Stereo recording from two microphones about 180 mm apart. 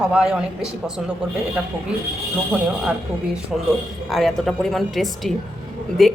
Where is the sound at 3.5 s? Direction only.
Centre (ahead or behind).